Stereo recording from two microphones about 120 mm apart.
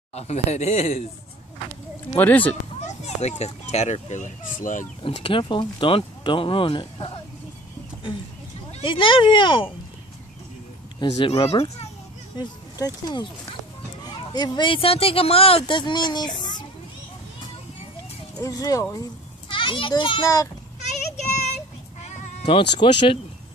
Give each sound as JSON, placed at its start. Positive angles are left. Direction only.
{"t": 0.1, "sound": "speech", "side_deg": 60}
{"t": 2.1, "sound": "speech", "side_deg": 15}
{"t": 2.9, "sound": "a child's voice", "side_deg": 70}
{"t": 5.0, "sound": "speech", "side_deg": 50}
{"t": 8.8, "sound": "speech", "side_deg": 45}
{"t": 11.0, "sound": "a child's voice", "side_deg": 50}
{"t": 12.4, "sound": "speech", "side_deg": 35}
{"t": 18.4, "sound": "speech", "side_deg": 30}
{"t": 19.5, "sound": "a child's voice", "side_deg": 45}
{"t": 20.8, "sound": "child singing", "side_deg": 75}
{"t": 22.5, "sound": "speech", "side_deg": 45}